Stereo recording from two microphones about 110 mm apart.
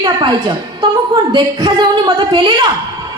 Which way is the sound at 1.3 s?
40° right (ahead or behind).